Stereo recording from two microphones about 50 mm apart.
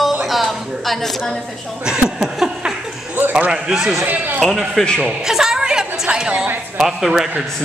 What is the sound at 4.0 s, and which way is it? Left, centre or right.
Speech, right.